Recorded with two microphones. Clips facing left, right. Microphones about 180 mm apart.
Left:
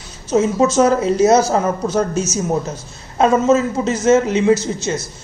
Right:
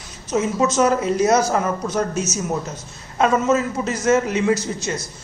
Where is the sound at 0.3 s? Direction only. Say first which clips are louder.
Left 5 dB; 30° left (ahead or behind).